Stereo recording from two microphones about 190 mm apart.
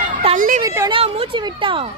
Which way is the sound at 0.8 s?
25° right (ahead or behind).